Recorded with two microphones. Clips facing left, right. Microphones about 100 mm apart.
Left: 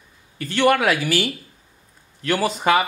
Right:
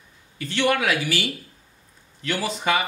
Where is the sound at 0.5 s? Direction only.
45° left (ahead or behind).